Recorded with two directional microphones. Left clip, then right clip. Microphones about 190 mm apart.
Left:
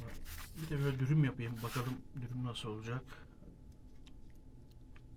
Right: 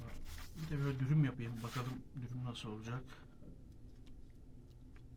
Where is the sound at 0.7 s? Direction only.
45° left (ahead or behind).